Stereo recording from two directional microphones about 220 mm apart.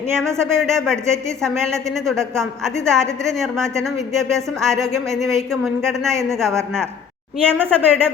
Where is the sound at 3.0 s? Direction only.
15° right (ahead or behind).